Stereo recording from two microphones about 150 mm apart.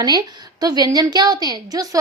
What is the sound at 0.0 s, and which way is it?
A woman's voice, 30° right (ahead or behind).